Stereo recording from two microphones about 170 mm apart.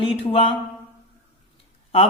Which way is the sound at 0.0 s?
35° left (ahead or behind).